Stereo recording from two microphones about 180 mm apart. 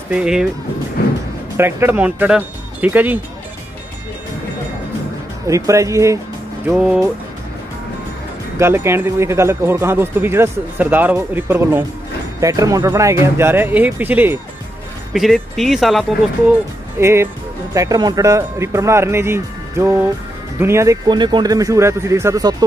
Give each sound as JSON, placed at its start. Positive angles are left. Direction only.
{"t": 0.1, "sound": "speech", "side_deg": -5}
{"t": 1.6, "sound": "speech", "side_deg": -10}
{"t": 5.5, "sound": "speech", "side_deg": -15}
{"t": 6.7, "sound": "speech", "side_deg": -5}
{"t": 8.5, "sound": "speech", "side_deg": -15}
{"t": 15.1, "sound": "speech", "side_deg": 0}
{"t": 17.0, "sound": "speech", "side_deg": -15}